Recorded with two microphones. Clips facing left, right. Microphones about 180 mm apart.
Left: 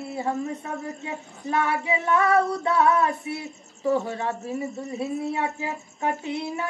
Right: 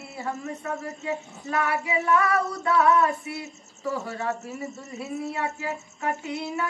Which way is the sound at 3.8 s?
25° left (ahead or behind).